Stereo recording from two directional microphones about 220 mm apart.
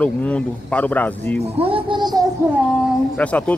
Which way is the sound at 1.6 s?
25° right (ahead or behind).